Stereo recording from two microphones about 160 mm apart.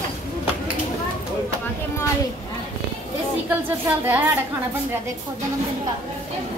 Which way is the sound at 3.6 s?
10° right (ahead or behind).